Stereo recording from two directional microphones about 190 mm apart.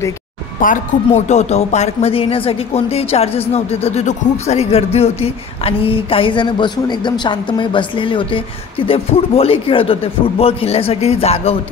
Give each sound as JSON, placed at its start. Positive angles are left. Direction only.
{"t": 0.6, "sound": "speech", "side_deg": 40}